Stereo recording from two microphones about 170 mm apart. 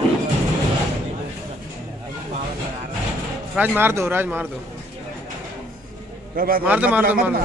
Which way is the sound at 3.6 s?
15° right (ahead or behind).